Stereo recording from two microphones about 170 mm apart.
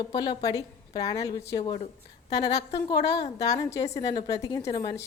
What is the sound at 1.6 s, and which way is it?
Speech, 35° left (ahead or behind).